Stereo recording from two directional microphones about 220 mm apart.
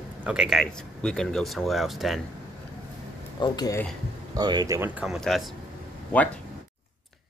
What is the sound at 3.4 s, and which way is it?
Speech, 15° left (ahead or behind).